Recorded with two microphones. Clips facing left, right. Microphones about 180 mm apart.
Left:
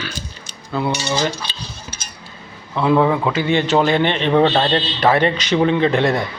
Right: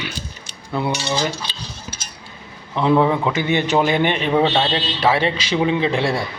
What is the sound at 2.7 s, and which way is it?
Speech, 15° right (ahead or behind).